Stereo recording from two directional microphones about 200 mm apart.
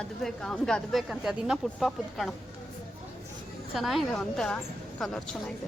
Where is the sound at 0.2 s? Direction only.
5° left (ahead or behind).